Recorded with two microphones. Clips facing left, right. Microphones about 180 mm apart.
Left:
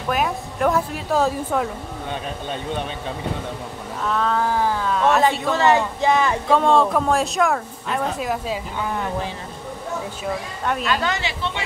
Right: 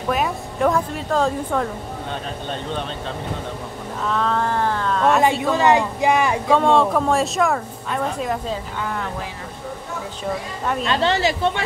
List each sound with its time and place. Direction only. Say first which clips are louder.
0.1 s speech: even; centre (ahead or behind)
4.0 s speech: even; centre (ahead or behind)
5.4 s speech: right 1 dB; 15° right (ahead or behind)
6.5 s speech: even; centre (ahead or behind)
8.8 s speech: left 2 dB; 15° left (ahead or behind)
10.8 s speech: right 5 dB; 30° right (ahead or behind)
11.1 s speech: right 8 dB; 40° right (ahead or behind)